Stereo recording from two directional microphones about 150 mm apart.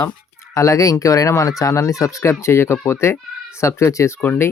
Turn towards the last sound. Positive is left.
turn(degrees=15)  # may be behind; listen again after turning